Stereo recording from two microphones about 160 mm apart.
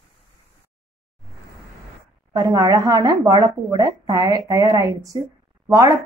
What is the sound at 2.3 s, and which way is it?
A woman's voice, 25° right (ahead or behind).